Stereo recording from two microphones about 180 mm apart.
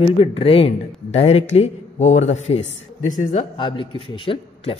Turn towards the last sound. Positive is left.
turn(degrees=30)  # may be behind; listen again after turning